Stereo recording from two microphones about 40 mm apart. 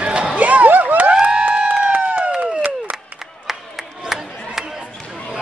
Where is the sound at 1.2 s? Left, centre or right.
Right.